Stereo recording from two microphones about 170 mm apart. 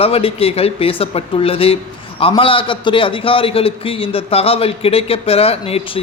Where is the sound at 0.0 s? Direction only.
35° left (ahead or behind).